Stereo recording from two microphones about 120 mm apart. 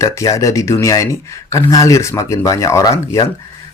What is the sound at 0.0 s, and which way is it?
Speech, 25° left (ahead or behind).